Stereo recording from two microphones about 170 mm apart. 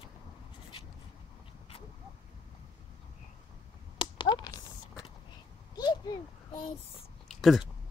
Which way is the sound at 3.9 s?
30° left (ahead or behind).